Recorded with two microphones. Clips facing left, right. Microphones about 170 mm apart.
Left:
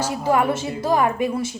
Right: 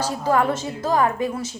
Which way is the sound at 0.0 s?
10° left (ahead or behind).